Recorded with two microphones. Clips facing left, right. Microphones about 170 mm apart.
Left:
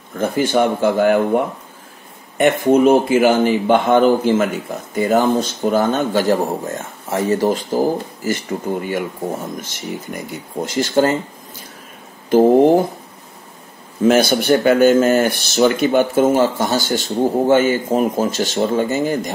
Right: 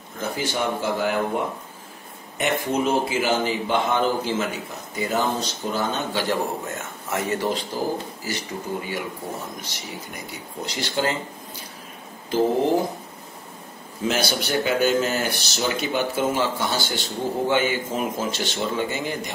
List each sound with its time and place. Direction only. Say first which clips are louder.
0.2 s speech: left 10 dB; 55° left (ahead or behind)
14.0 s speech: left 11 dB; 50° left (ahead or behind)